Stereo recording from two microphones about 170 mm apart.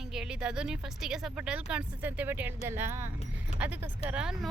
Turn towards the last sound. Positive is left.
turn(degrees=-5)  # may be behind; listen again after turning